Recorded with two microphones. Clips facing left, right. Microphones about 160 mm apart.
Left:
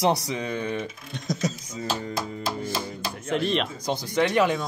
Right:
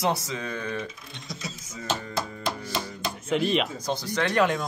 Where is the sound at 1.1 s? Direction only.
45° left (ahead or behind).